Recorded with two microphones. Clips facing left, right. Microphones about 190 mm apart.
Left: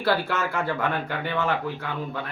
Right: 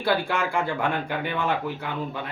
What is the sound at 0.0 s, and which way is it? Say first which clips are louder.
Speech: even; 15° right (ahead or behind).